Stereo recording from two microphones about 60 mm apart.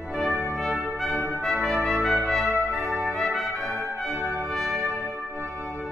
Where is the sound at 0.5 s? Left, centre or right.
Centre.